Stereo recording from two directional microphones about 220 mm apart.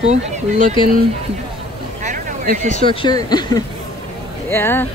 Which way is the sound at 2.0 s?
35° right (ahead or behind).